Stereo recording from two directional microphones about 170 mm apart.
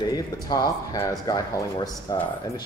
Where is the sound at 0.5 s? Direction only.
25° left (ahead or behind).